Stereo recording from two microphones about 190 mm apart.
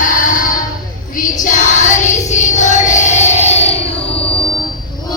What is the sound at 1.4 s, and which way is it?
Music, 40° left (ahead or behind).